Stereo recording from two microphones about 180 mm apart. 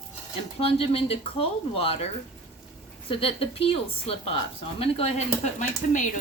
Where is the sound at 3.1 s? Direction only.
30° left (ahead or behind).